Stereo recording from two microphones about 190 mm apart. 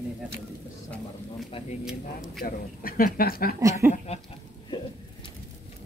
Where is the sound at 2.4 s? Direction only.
50° left (ahead or behind).